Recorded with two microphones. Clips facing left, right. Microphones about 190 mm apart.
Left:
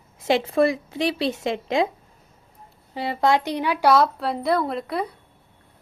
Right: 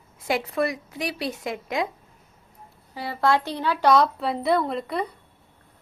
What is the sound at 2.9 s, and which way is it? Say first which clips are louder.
A woman's voice: left 2 dB; 20° left (ahead or behind).